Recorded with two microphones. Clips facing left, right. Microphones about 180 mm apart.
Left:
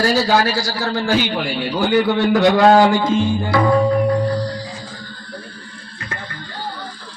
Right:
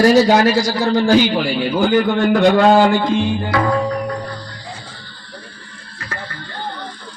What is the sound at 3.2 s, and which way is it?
Tabla, 5° right (ahead or behind).